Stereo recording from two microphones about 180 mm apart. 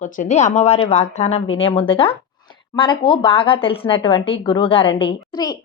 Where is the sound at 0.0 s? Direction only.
40° left (ahead or behind).